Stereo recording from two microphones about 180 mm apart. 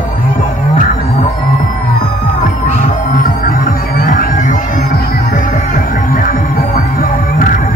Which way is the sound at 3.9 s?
55° left (ahead or behind).